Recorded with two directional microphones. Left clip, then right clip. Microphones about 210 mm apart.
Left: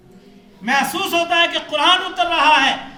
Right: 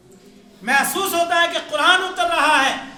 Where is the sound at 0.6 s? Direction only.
20° right (ahead or behind).